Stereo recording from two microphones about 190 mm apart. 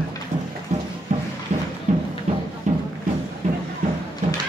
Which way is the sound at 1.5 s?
35° right (ahead or behind).